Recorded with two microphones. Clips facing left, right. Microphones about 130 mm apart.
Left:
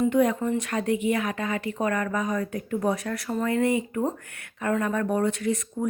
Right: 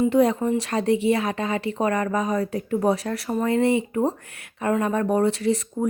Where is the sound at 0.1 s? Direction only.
30° right (ahead or behind).